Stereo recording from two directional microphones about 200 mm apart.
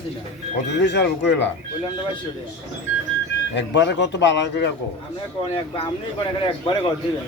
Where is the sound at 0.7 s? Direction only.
60° left (ahead or behind).